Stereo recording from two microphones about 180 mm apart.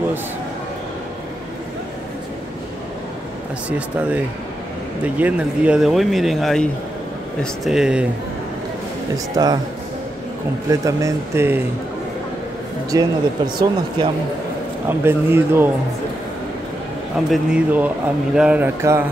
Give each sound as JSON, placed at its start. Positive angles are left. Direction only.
{"t": 3.6, "sound": "speech", "side_deg": -5}
{"t": 9.1, "sound": "speech", "side_deg": -20}
{"t": 10.7, "sound": "speech", "side_deg": -20}
{"t": 12.9, "sound": "speech", "side_deg": -20}
{"t": 14.9, "sound": "speech", "side_deg": -10}
{"t": 17.3, "sound": "speech", "side_deg": -5}